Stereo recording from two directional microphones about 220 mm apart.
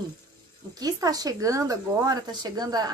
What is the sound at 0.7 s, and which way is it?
A woman's voice, 15° right (ahead or behind).